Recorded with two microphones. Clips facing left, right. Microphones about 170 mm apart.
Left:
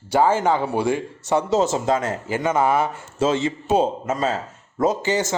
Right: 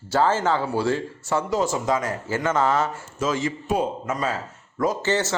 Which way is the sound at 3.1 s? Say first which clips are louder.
Left 4 dB; 25° left (ahead or behind).